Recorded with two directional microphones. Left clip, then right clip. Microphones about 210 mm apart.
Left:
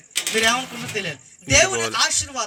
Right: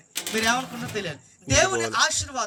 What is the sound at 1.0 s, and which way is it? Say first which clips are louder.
Speech: left 5 dB; centre (ahead or behind).